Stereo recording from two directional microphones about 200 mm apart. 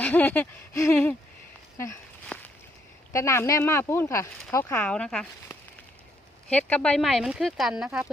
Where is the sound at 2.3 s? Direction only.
5° left (ahead or behind).